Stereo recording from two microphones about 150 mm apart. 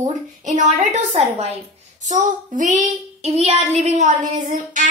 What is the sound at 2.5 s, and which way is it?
Speech, 60° right (ahead or behind).